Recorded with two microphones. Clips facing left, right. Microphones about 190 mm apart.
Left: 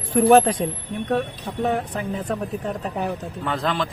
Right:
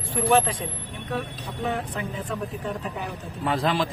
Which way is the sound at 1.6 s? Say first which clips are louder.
Left 5 dB; 40° left (ahead or behind).